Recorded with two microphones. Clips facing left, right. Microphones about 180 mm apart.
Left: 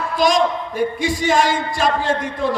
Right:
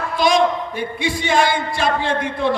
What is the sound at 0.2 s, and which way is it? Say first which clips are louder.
A man's voice: right 1 dB; 40° left (ahead or behind).